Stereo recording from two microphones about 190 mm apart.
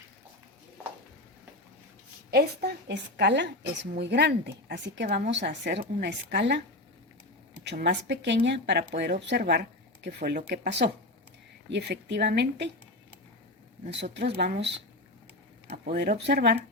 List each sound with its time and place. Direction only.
2.3 s a woman's voice: 55° right (ahead or behind)
7.6 s a woman's voice: 65° right (ahead or behind)
11.7 s a woman's voice: 65° right (ahead or behind)
14.0 s a woman's voice: 60° right (ahead or behind)
15.7 s a woman's voice: 50° right (ahead or behind)